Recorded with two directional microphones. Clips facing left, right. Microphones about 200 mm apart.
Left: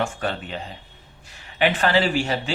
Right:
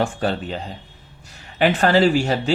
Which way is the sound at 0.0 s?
35° right (ahead or behind).